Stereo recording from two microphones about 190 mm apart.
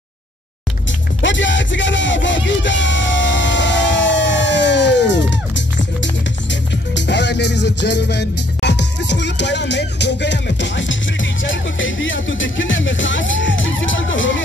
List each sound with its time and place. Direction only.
1.2 s music: 75° left (ahead or behind); by 14.3 s 90° left